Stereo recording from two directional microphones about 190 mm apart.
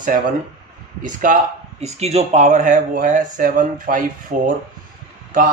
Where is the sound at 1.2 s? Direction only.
40° right (ahead or behind).